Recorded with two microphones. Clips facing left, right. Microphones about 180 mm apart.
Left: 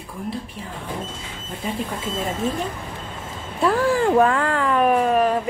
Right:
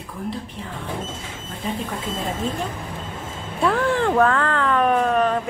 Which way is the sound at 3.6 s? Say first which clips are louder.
Left 1 dB; 5° left (ahead or behind).